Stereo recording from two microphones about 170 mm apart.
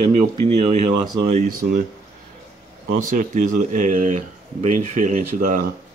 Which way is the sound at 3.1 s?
50° right (ahead or behind).